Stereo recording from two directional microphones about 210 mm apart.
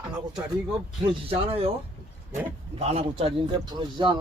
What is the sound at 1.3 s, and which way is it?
Speech, 25° right (ahead or behind).